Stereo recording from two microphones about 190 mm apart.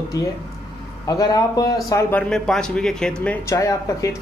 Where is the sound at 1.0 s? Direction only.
20° left (ahead or behind).